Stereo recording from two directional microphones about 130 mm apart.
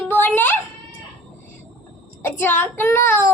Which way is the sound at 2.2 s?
15° left (ahead or behind).